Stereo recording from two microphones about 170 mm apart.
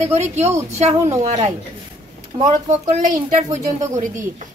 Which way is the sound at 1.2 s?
40° right (ahead or behind).